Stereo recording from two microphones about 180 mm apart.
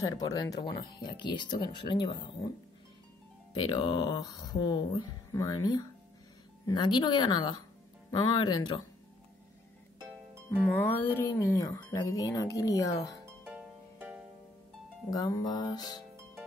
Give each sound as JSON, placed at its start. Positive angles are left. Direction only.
{"t": 0.0, "sound": "speech", "side_deg": 20}
{"t": 3.6, "sound": "speech", "side_deg": 25}
{"t": 10.9, "sound": "speech", "side_deg": 10}
{"t": 13.2, "sound": "harp", "side_deg": -10}
{"t": 15.0, "sound": "speech", "side_deg": 20}